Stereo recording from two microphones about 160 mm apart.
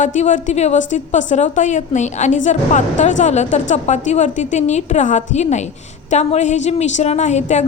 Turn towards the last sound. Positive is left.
turn(degrees=45)  # may be behind; listen again after turning